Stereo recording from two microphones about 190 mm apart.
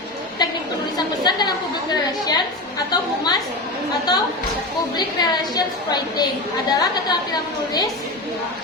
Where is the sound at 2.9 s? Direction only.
20° left (ahead or behind).